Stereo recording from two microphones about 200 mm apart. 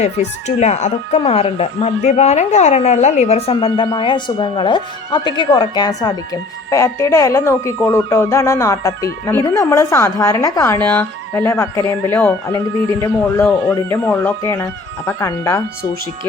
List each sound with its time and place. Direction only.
0.0 s speech: 35° left (ahead or behind); by 15.9 s 15° left (ahead or behind)